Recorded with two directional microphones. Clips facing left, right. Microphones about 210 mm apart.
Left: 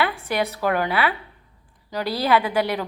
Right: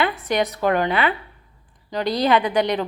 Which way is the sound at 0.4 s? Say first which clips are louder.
Right 2 dB; 15° right (ahead or behind).